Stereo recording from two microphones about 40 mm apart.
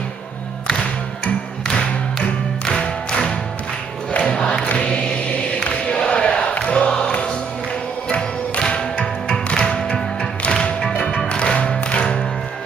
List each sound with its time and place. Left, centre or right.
1.7 s music: left
4.7 s chant: left
5.6 s a sound: left
6.8 s music: left
10.9 s music: left
11.1 s music: left